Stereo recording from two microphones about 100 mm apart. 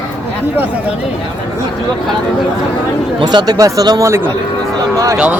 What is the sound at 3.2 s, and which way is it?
Speech, 45° right (ahead or behind).